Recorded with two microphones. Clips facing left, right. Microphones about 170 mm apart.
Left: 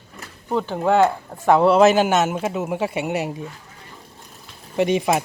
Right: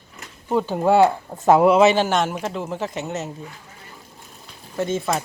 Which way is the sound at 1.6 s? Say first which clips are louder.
Left 1 dB; 5° right (ahead or behind).